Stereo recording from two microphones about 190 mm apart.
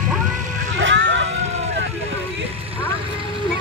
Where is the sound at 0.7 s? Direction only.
75° right (ahead or behind).